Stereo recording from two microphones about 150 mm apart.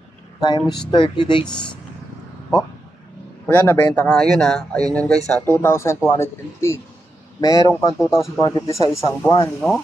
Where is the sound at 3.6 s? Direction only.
10° left (ahead or behind).